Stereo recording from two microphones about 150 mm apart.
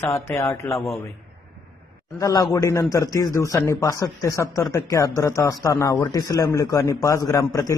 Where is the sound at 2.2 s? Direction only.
25° left (ahead or behind).